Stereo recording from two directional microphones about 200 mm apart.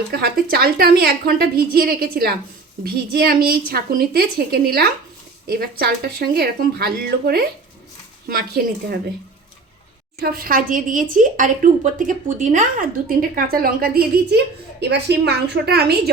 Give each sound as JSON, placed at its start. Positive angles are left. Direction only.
{"t": 0.1, "sound": "a woman's voice", "side_deg": -50}
{"t": 10.2, "sound": "a woman's voice", "side_deg": -50}